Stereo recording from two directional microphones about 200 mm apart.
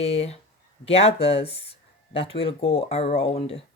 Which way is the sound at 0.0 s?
30° left (ahead or behind).